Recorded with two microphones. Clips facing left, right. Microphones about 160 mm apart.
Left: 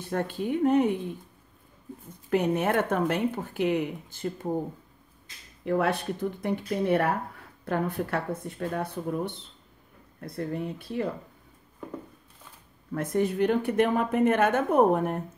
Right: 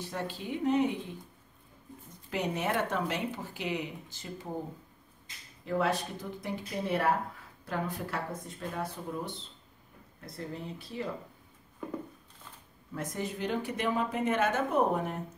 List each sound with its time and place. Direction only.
0.0 s speech: 55° left (ahead or behind)
2.2 s speech: 50° left (ahead or behind)
5.7 s speech: 60° left (ahead or behind)
12.9 s speech: 60° left (ahead or behind)